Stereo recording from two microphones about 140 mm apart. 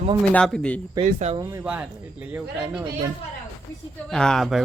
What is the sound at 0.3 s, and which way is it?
Speech, 5° left (ahead or behind).